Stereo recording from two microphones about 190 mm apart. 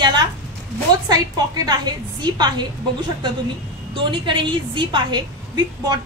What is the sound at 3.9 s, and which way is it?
A woman's voice, 25° right (ahead or behind).